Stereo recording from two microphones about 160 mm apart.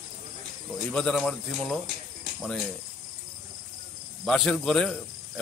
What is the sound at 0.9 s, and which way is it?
Speech, 5° left (ahead or behind).